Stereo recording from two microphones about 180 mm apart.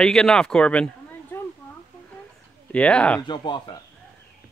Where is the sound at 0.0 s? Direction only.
5° left (ahead or behind).